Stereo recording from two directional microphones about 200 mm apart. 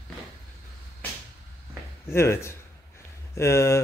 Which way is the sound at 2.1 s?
15° left (ahead or behind).